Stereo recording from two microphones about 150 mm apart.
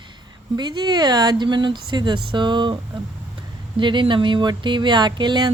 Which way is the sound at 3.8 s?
30° right (ahead or behind).